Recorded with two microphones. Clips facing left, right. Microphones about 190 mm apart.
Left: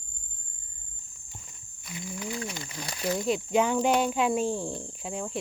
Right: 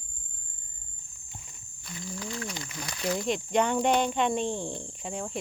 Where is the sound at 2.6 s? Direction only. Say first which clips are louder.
Left 1 dB; 25° left (ahead or behind).